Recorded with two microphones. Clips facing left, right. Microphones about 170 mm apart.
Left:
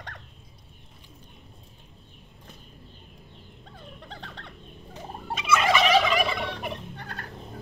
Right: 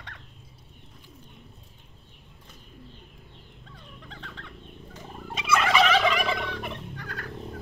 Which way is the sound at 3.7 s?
35° left (ahead or behind).